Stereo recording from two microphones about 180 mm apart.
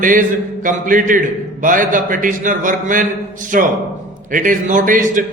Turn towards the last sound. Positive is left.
turn(degrees=-45)  # may be behind; listen again after turning